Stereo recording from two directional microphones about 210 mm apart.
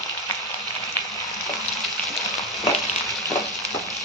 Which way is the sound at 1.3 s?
Centre (ahead or behind).